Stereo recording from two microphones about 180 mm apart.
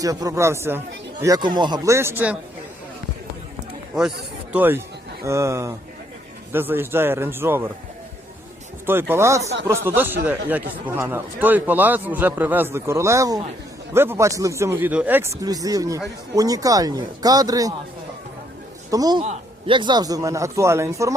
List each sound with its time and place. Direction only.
0.0 s a man's voice: 20° right (ahead or behind)
4.5 s a man's voice: 10° right (ahead or behind)
8.9 s a man's voice: 10° right (ahead or behind)
18.9 s a man's voice: 20° right (ahead or behind)
19.2 s a sound: 40° right (ahead or behind)
19.7 s a man's voice: 25° right (ahead or behind)